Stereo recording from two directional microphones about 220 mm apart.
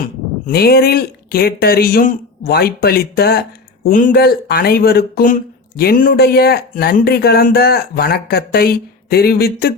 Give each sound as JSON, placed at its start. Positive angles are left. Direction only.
{"t": 0.0, "sound": "speech", "side_deg": 45}